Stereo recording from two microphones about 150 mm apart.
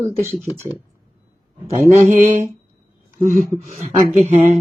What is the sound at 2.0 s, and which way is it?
Speech, 55° right (ahead or behind).